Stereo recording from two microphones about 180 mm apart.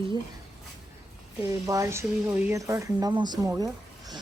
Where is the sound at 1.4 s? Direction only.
20° right (ahead or behind).